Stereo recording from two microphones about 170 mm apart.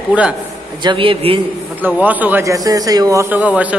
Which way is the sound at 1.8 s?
10° right (ahead or behind).